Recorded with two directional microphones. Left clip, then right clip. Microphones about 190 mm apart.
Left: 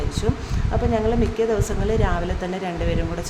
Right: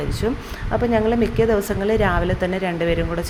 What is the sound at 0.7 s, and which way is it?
A woman's voice, 25° right (ahead or behind).